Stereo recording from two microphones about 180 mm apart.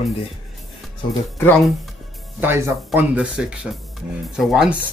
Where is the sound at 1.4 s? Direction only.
5° left (ahead or behind).